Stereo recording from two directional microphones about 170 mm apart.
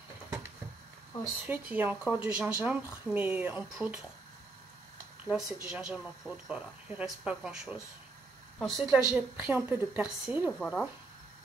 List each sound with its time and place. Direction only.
1.5 s a woman's voice: 10° right (ahead or behind)
5.2 s a woman's voice: 5° right (ahead or behind)
10.6 s speech: 5° left (ahead or behind)